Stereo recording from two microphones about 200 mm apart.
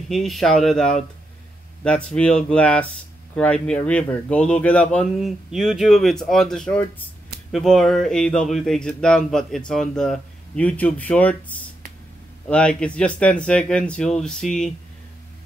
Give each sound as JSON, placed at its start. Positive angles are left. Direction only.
{"t": 0.1, "sound": "speech", "side_deg": 0}